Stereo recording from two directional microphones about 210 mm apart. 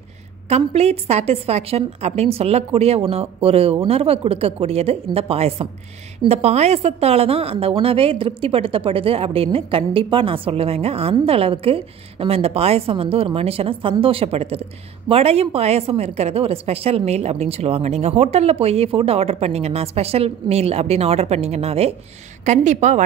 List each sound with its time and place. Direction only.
0.5 s a woman's voice: 30° right (ahead or behind)